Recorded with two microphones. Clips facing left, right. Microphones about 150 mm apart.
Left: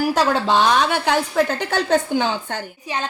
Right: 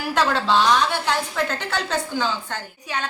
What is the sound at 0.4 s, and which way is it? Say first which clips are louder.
Speech: left 2 dB; 55° left (ahead or behind).